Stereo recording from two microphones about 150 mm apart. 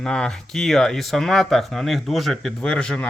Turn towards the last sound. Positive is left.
turn(degrees=5)  # may be behind; listen again after turning